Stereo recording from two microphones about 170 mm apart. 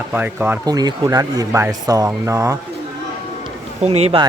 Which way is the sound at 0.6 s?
25° right (ahead or behind).